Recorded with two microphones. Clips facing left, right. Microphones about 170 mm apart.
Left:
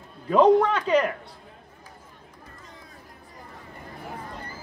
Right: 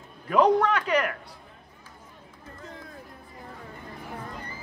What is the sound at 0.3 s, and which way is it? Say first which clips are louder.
Speech: left 3 dB; 25° left (ahead or behind).